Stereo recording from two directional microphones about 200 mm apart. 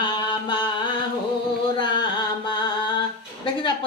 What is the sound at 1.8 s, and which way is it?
Carnatic music, 20° left (ahead or behind).